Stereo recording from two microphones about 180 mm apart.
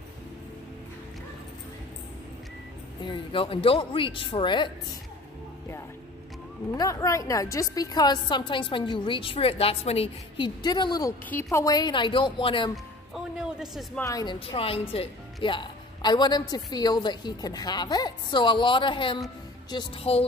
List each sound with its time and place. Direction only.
3.0 s speech: 30° left (ahead or behind)
6.7 s speech: 20° left (ahead or behind)
11.2 s speech: 10° left (ahead or behind); by 12.7 s 30° left (ahead or behind)
12.7 s music: centre (ahead or behind)
13.9 s speech: 20° left (ahead or behind); by 20.2 s 35° left (ahead or behind)